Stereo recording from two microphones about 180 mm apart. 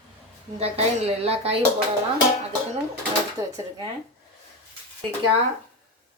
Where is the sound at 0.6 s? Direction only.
35° right (ahead or behind).